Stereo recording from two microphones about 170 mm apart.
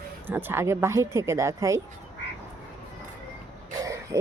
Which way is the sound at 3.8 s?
20° right (ahead or behind).